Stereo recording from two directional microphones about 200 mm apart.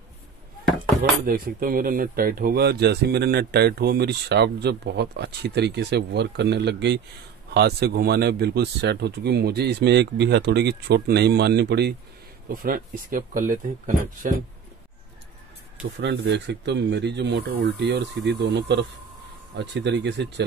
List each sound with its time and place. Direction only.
1.2 s speech: 45° right (ahead or behind)
12.6 s speech: 45° right (ahead or behind)
16.0 s speech: 60° right (ahead or behind)